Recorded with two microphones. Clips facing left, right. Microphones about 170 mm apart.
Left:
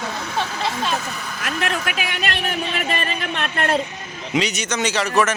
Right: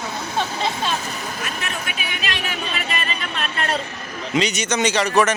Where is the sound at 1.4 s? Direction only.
90° left; by 3.8 s 55° left (ahead or behind).